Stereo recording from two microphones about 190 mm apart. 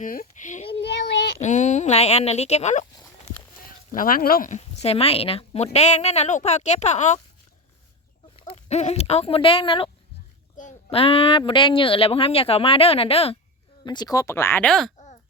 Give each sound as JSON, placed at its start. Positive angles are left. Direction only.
{"t": 0.0, "sound": "a child's voice", "side_deg": 45}
{"t": 3.9, "sound": "speech", "side_deg": 45}
{"t": 8.4, "sound": "speech", "side_deg": 35}
{"t": 14.9, "sound": "a sound", "side_deg": 35}